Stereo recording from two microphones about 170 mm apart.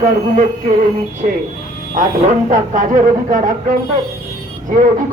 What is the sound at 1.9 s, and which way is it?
A man's voice, 50° right (ahead or behind).